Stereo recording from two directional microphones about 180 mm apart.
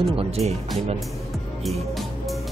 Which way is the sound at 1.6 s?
Centre (ahead or behind).